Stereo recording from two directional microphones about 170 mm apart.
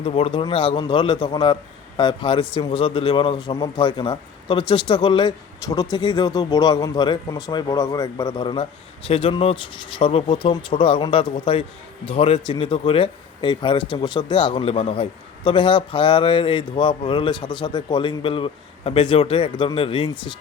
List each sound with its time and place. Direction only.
0.0 s speech: 35° left (ahead or behind)